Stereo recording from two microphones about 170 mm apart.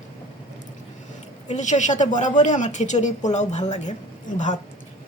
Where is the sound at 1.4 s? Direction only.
45° left (ahead or behind).